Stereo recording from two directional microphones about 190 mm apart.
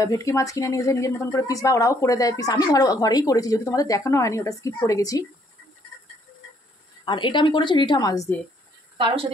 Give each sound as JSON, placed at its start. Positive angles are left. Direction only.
{"t": 0.0, "sound": "speech", "side_deg": 15}
{"t": 7.1, "sound": "a woman's voice", "side_deg": 25}
{"t": 8.9, "sound": "a woman's voice", "side_deg": -25}